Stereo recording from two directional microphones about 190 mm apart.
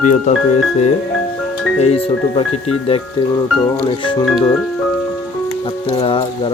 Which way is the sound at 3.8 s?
25° left (ahead or behind).